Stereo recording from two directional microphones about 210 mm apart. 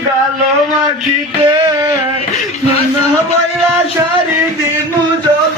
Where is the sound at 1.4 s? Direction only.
20° right (ahead or behind).